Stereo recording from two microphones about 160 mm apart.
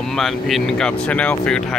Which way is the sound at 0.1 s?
Centre (ahead or behind).